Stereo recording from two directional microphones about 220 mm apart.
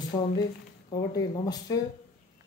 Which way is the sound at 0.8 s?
15° left (ahead or behind).